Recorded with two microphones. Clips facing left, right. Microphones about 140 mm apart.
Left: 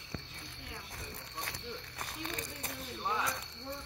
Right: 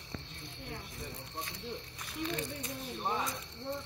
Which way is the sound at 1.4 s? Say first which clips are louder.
Right 1 dB; 65° left (ahead or behind).